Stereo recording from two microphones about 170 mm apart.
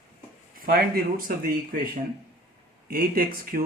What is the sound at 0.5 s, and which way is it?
Speech, 60° right (ahead or behind).